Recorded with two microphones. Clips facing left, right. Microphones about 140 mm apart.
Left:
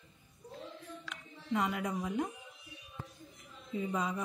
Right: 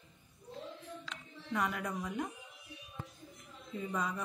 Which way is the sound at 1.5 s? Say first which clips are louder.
Left 2 dB; 15° left (ahead or behind).